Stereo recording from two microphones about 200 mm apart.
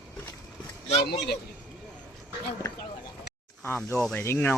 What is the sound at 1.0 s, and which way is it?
Speech, 55° left (ahead or behind).